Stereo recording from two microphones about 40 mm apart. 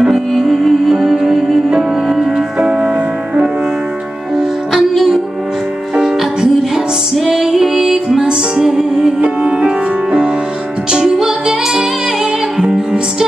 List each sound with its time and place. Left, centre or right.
0.3 s music: centre
2.6 s music: right
5.9 s music: centre
9.2 s music: right